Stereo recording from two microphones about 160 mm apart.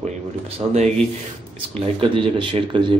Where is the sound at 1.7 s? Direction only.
30° right (ahead or behind).